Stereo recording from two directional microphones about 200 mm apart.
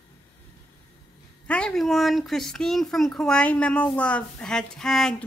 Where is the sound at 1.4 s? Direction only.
5° left (ahead or behind).